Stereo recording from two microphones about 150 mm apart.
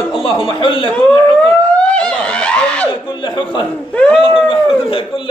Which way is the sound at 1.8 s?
5° left (ahead or behind).